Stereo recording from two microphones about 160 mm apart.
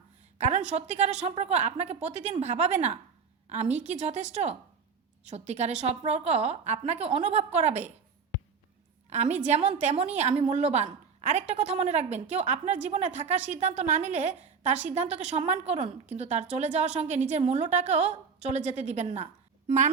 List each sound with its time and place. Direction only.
0.3 s a woman's voice: 45° right (ahead or behind)
9.0 s a woman's voice: 45° right (ahead or behind)